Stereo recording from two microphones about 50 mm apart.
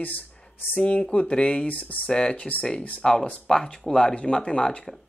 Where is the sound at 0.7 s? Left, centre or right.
Left.